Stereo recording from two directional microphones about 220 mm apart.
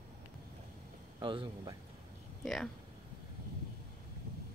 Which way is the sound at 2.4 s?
Centre (ahead or behind).